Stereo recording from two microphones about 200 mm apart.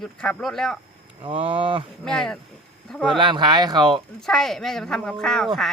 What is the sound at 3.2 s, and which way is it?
Speech, 25° right (ahead or behind).